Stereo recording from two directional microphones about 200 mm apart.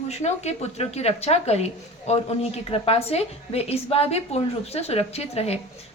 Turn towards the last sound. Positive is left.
turn(degrees=30)  # may be behind; listen again after turning